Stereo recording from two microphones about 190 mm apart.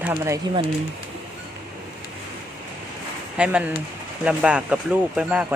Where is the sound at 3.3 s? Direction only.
5° right (ahead or behind).